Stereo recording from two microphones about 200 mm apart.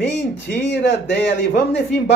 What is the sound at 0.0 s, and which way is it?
Speech, 60° left (ahead or behind).